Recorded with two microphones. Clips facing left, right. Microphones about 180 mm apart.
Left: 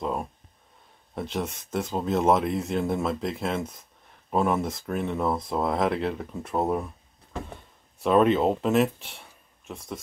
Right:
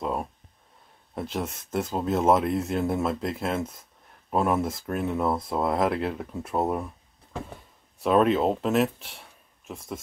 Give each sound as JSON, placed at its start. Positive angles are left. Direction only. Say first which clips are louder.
{"t": 0.0, "sound": "speech", "louder": "even", "side_deg": -5}
{"t": 8.0, "sound": "speech", "louder": "left 1 dB", "side_deg": 0}